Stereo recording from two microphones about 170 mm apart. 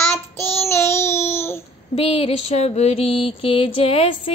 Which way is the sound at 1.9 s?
35° left (ahead or behind).